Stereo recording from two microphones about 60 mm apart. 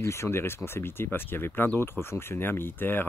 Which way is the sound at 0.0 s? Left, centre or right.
Left.